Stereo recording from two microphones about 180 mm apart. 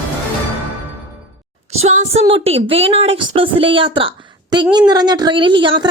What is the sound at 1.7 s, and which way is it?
A woman's voice, 40° right (ahead or behind).